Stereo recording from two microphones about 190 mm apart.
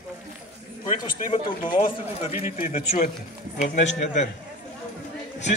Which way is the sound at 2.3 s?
40° left (ahead or behind).